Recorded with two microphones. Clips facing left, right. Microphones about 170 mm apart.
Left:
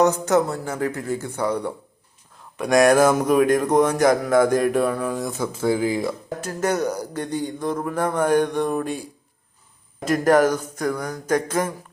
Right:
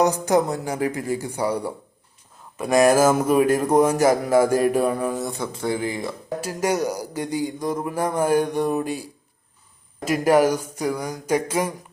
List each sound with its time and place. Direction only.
0.0 s speech: 15° right (ahead or behind)
5.5 s speech: 5° left (ahead or behind)
6.4 s speech: 10° right (ahead or behind)